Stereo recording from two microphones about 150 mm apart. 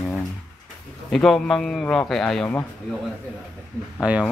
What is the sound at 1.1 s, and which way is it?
A man's voice, 5° left (ahead or behind).